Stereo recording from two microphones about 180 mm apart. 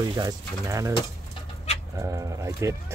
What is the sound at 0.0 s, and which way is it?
Speech, 20° right (ahead or behind).